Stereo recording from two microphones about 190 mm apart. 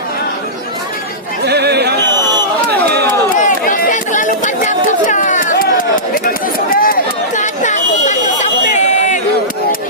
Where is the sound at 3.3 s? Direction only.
40° left (ahead or behind).